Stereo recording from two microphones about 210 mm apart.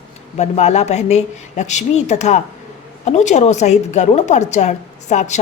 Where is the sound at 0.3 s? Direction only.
30° left (ahead or behind).